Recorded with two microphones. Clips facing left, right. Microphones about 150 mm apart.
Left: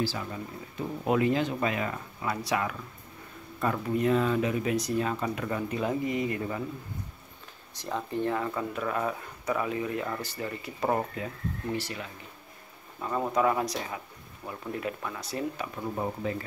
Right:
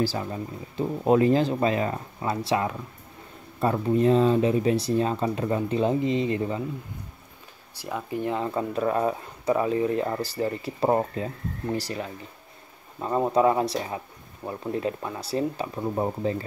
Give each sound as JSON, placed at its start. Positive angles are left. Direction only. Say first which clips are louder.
{"t": 0.0, "sound": "speech", "louder": "right 5 dB", "side_deg": -35}
{"t": 7.7, "sound": "speech", "louder": "right 1 dB", "side_deg": -10}